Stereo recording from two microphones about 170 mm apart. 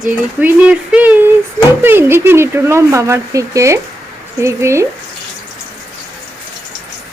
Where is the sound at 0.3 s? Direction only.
10° right (ahead or behind).